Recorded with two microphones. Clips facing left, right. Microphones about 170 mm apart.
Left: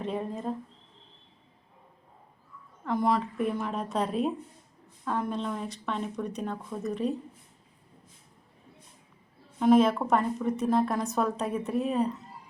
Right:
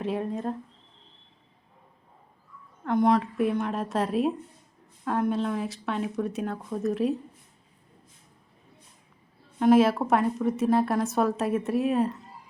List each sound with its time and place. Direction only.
0.0 s speech: centre (ahead or behind)
2.8 s speech: centre (ahead or behind)
9.6 s speech: 5° right (ahead or behind)